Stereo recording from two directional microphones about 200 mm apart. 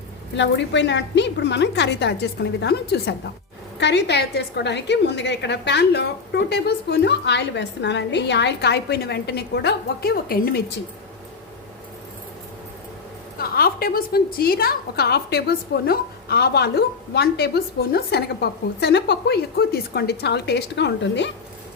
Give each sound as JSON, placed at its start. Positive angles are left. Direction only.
{"t": 0.3, "sound": "a woman's voice", "side_deg": 60}
{"t": 13.4, "sound": "a woman's voice", "side_deg": 50}